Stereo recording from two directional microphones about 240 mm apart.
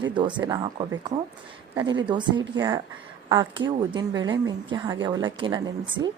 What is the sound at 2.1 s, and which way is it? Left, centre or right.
A woman's voice, centre.